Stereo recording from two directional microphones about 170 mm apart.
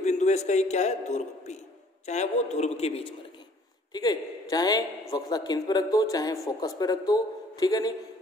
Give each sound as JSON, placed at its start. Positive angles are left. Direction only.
{"t": 0.0, "sound": "a man's voice", "side_deg": 40}
{"t": 3.9, "sound": "speech", "side_deg": 25}